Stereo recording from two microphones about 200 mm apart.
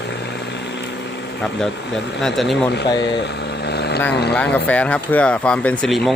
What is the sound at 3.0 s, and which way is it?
Vehicle, 65° left (ahead or behind).